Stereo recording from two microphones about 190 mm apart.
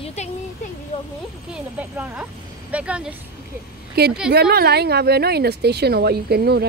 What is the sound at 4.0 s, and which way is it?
Speech, 55° right (ahead or behind).